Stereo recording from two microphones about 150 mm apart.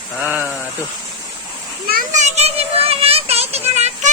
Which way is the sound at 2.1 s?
50° right (ahead or behind).